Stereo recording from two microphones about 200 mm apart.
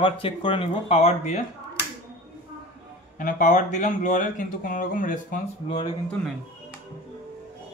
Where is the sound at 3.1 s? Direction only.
40° left (ahead or behind).